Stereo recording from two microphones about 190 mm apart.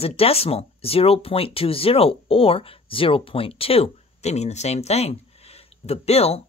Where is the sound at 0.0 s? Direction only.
30° left (ahead or behind).